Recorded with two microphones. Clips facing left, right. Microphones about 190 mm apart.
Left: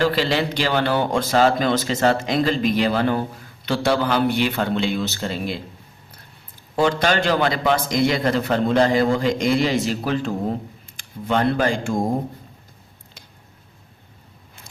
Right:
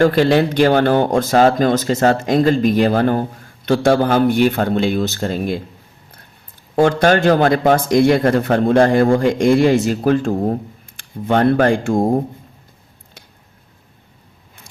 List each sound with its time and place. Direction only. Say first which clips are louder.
0.0 s speech: right 7 dB; 50° right (ahead or behind)
6.7 s a man's voice: right 6 dB; 50° right (ahead or behind)